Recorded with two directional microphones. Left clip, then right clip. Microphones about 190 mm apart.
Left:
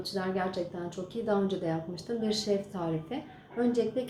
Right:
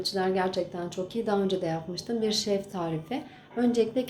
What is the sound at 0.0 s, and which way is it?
A woman's voice, 45° right (ahead or behind).